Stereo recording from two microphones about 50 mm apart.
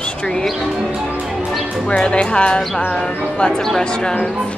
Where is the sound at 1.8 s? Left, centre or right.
Centre.